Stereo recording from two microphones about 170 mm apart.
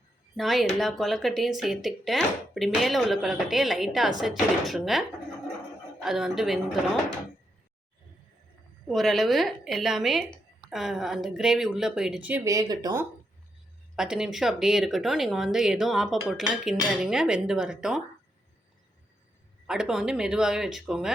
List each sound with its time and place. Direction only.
0.3 s speech: centre (ahead or behind)
8.9 s speech: centre (ahead or behind)
12.5 s speech: 20° right (ahead or behind)
13.9 s speech: 5° right (ahead or behind)
19.6 s speech: 5° right (ahead or behind)